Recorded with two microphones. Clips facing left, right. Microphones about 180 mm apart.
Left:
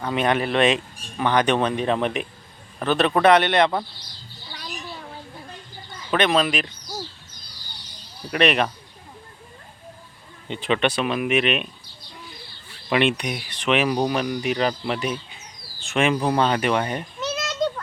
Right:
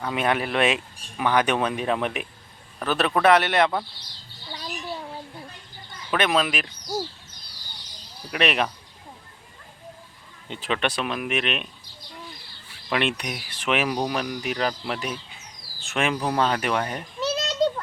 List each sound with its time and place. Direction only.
0.0 s speech: 5° right (ahead or behind)
6.1 s speech: 5° right (ahead or behind)
8.3 s speech: 5° right (ahead or behind)
10.5 s speech: centre (ahead or behind)
12.9 s speech: centre (ahead or behind)
17.2 s children playing: 30° right (ahead or behind)